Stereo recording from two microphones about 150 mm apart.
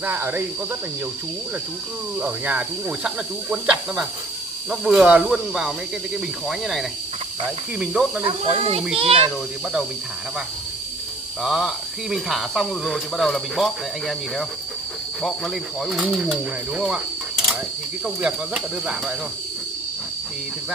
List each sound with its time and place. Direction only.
0.0 s speech: 15° right (ahead or behind)
2.1 s speech: 10° right (ahead or behind)
8.5 s a child's voice: 40° right (ahead or behind)
11.4 s speech: centre (ahead or behind)